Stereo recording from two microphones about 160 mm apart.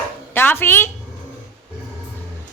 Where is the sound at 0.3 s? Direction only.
15° left (ahead or behind).